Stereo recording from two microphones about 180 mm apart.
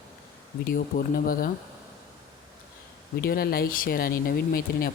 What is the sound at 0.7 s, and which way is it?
Speech, 50° left (ahead or behind).